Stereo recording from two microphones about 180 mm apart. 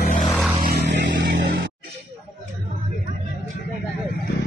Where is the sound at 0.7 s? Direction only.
85° right.